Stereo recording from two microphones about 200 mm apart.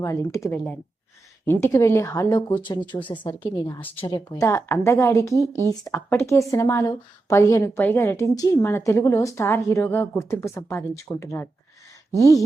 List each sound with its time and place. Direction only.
0.0 s a woman's voice: 15° left (ahead or behind)
0.4 s a woman's voice: 5° left (ahead or behind)